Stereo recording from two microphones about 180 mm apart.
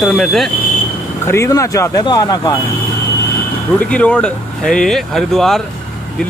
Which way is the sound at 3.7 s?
5° left (ahead or behind).